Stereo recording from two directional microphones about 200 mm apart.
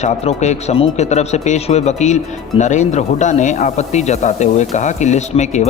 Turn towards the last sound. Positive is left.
turn(degrees=35)  # may be behind; listen again after turning